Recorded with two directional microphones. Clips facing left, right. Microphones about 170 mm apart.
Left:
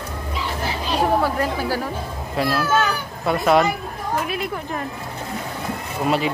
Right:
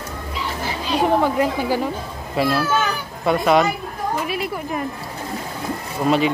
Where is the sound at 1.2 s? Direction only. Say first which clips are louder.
Right 3 dB; 15° right (ahead or behind).